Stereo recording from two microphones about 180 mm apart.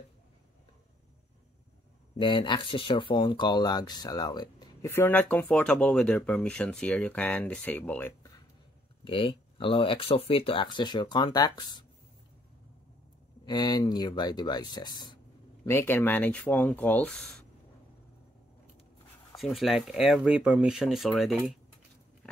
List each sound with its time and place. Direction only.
2.1 s speech: 25° left (ahead or behind); by 8.3 s 10° left (ahead or behind)
9.0 s speech: 30° left (ahead or behind)
13.5 s speech: 20° left (ahead or behind)
15.6 s speech: 15° left (ahead or behind)
19.3 s speech: centre (ahead or behind)
22.2 s a sound: 5° left (ahead or behind)